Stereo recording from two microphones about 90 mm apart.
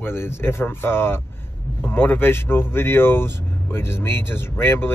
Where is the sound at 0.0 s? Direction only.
25° left (ahead or behind).